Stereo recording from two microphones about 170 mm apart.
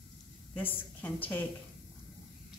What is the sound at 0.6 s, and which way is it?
Speech, 10° left (ahead or behind).